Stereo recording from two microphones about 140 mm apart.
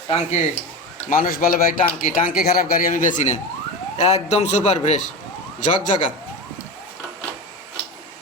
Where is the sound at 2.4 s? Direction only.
90° left; by 3.3 s 65° left (ahead or behind).